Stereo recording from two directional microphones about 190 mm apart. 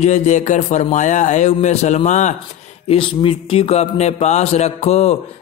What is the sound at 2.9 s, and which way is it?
Speech, 25° left (ahead or behind).